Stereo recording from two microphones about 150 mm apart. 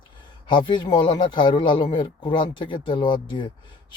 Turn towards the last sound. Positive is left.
turn(degrees=30)  # may be behind; listen again after turning